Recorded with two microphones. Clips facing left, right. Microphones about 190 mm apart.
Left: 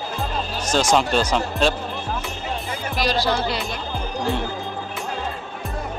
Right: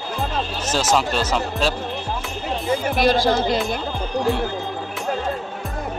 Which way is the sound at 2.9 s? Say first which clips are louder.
Right 3 dB; 55° right (ahead or behind).